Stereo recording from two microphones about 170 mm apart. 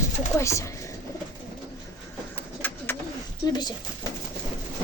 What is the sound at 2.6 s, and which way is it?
Bird, 10° left (ahead or behind).